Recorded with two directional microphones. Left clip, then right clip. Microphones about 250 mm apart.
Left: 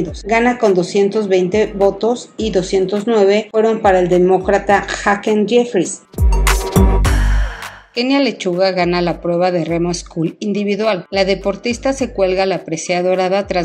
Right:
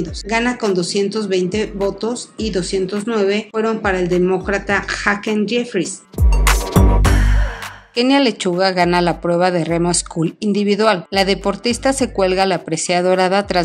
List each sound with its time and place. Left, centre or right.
0.3 s speech: centre
6.4 s music: centre
7.9 s speech: right